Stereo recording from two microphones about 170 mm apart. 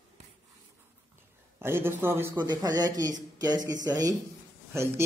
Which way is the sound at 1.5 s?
15° right (ahead or behind).